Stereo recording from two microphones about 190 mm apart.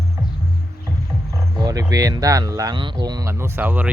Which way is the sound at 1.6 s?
20° right (ahead or behind).